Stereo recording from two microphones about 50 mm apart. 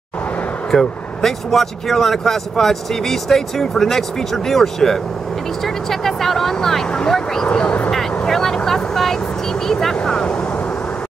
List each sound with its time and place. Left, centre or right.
0.7 s speech: centre
7.4 s speech: left
8.3 s vehicle: centre
9.7 s speech: centre